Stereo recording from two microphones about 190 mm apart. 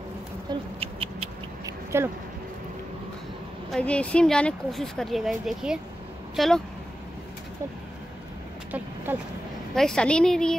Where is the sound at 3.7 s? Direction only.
5° left (ahead or behind).